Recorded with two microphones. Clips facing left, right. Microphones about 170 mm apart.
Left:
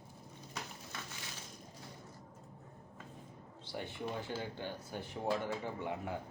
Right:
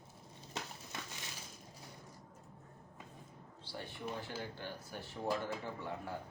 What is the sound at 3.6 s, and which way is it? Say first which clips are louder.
Speech: left 3 dB; 20° left (ahead or behind).